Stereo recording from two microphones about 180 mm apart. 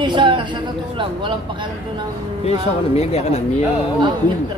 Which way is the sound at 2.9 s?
35° left (ahead or behind).